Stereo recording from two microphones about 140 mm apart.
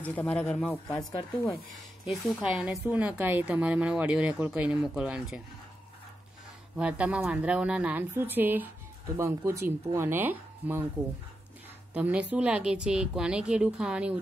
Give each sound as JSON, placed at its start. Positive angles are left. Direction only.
{"t": 0.0, "sound": "speech", "side_deg": 10}
{"t": 2.0, "sound": "a woman's voice", "side_deg": -5}
{"t": 6.8, "sound": "a woman's voice", "side_deg": -10}
{"t": 11.9, "sound": "a woman's voice", "side_deg": -10}